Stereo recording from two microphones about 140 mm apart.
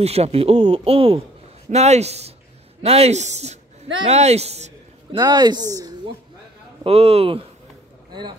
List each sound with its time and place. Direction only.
0.0 s speech: 45° right (ahead or behind)
5.1 s speech: 30° right (ahead or behind)
6.8 s speech: 45° right (ahead or behind)
8.1 s speech: 30° right (ahead or behind)